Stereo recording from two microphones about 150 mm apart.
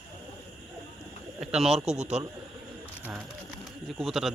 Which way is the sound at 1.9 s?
50° right (ahead or behind).